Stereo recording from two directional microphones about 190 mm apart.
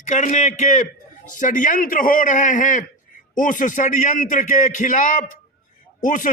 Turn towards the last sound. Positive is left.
turn(degrees=45)  # may be behind; listen again after turning